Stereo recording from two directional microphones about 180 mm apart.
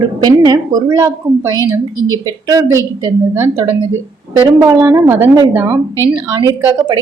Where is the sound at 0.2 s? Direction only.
20° right (ahead or behind).